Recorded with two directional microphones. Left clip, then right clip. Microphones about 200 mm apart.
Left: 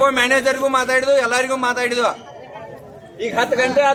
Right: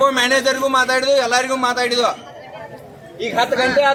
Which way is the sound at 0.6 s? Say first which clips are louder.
Right 1 dB; 5° left (ahead or behind).